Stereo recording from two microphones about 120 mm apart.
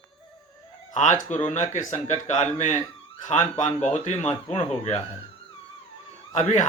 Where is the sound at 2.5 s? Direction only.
80° left.